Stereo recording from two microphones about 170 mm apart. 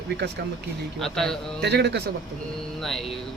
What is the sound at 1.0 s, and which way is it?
Speech, 5° left (ahead or behind).